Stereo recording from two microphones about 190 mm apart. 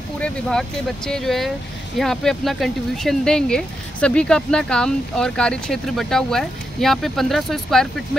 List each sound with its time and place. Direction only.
0.2 s speech: 5° left (ahead or behind)